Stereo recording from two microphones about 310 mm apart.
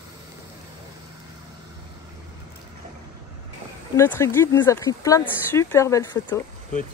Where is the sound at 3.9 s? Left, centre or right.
Centre.